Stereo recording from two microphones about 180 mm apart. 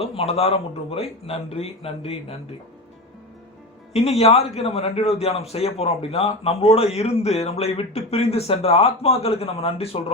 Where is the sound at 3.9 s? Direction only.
35° left (ahead or behind).